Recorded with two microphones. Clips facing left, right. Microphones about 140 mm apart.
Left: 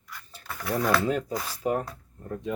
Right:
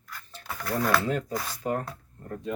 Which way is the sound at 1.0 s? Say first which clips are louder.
Left 1 dB; 10° left (ahead or behind).